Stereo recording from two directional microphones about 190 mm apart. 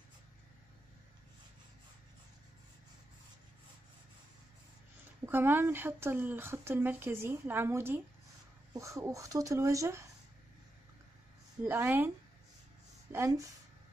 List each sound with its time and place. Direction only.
5.2 s speech: 10° right (ahead or behind)
11.6 s speech: 10° right (ahead or behind)
13.1 s speech: 15° right (ahead or behind)